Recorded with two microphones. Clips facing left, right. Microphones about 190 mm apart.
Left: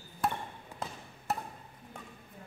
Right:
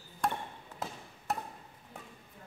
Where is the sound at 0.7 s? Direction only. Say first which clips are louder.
Even; 10° left (ahead or behind).